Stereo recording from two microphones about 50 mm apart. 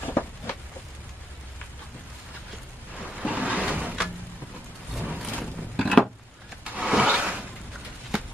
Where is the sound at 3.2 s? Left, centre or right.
Right.